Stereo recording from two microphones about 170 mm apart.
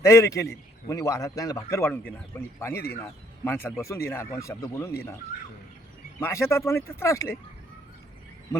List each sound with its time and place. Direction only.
0.0 s a man's voice: 20° left (ahead or behind)
6.1 s a man's voice: 15° left (ahead or behind)